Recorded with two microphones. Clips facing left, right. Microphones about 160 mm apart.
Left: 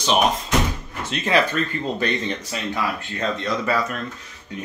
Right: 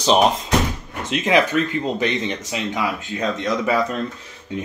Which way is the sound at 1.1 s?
15° right (ahead or behind).